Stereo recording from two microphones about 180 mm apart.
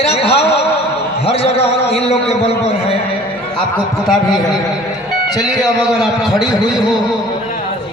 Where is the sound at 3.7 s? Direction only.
5° left (ahead or behind).